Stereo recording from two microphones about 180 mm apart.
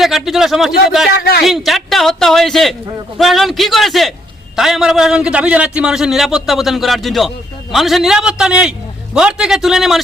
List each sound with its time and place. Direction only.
0.0 s a man's voice: centre (ahead or behind)
1.1 s a man's voice: 65° left (ahead or behind)
1.5 s a man's voice: centre (ahead or behind)